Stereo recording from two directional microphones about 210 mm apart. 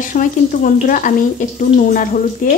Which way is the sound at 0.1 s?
40° left (ahead or behind).